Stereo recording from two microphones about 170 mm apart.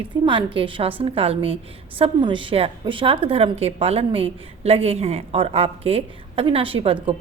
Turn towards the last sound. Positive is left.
turn(degrees=-35)  # may be behind; listen again after turning